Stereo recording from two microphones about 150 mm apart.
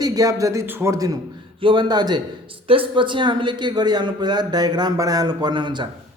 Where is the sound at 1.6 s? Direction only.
35° right (ahead or behind).